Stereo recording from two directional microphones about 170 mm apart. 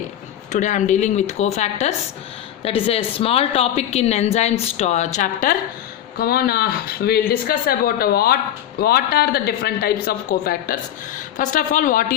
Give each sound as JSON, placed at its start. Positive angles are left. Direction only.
{"t": 0.5, "sound": "a woman's voice", "side_deg": 45}
{"t": 6.1, "sound": "speech", "side_deg": 65}
{"t": 11.3, "sound": "a woman's voice", "side_deg": 50}